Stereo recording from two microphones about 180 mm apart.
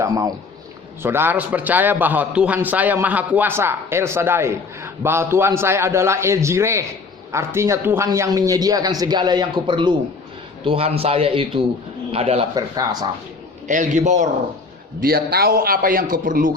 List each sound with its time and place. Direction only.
0.0 s a man's voice: 20° right (ahead or behind); by 12.5 s 35° right (ahead or behind)
12.5 s a man's voice: 20° right (ahead or behind)
13.7 s a man's voice: 45° right (ahead or behind)
15.0 s a man's voice: 60° right (ahead or behind)